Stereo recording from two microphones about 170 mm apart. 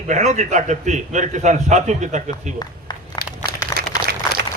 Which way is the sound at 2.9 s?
25° left (ahead or behind).